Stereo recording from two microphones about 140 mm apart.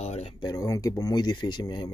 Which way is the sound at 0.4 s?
25° left (ahead or behind).